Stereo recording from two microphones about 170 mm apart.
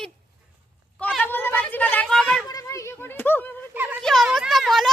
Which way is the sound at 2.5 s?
20° left (ahead or behind).